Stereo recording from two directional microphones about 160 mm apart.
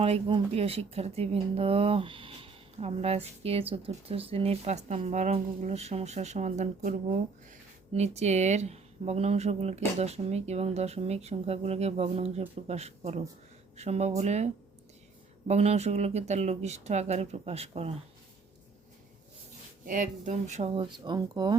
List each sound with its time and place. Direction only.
0.0 s speech: 35° right (ahead or behind)
19.8 s speech: 55° right (ahead or behind)
20.7 s speech: 30° right (ahead or behind)